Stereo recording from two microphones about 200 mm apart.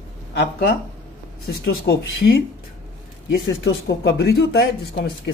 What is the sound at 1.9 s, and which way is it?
Speech, 55° left (ahead or behind).